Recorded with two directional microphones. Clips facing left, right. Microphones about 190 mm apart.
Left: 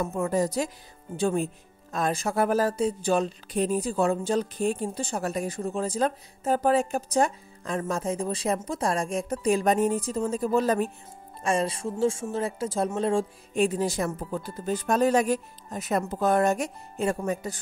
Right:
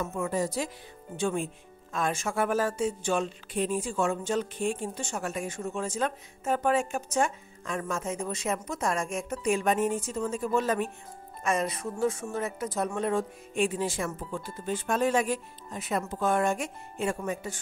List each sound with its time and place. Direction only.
0.0 s speech: 40° left (ahead or behind)